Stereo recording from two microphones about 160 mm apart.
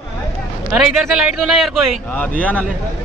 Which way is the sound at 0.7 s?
5° right (ahead or behind).